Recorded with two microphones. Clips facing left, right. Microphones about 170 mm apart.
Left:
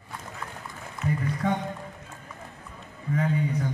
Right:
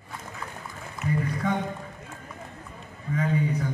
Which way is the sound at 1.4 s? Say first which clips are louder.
Left 1 dB; 30° left (ahead or behind).